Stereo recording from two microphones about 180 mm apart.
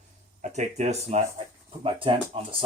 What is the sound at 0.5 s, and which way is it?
Speech, 40° right (ahead or behind).